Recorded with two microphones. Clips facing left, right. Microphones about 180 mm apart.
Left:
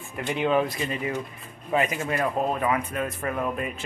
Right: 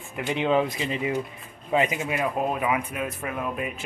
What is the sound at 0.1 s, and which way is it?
Speech, 20° right (ahead or behind).